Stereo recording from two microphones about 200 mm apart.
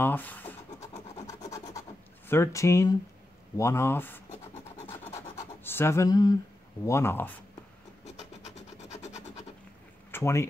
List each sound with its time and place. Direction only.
0.0 s scratch: 10° left (ahead or behind)
3.5 s speech: 15° left (ahead or behind)
5.6 s speech: 10° left (ahead or behind)
8.0 s scratch: 35° left (ahead or behind)
8.9 s a sound: 35° left (ahead or behind)
10.1 s speech: 15° left (ahead or behind)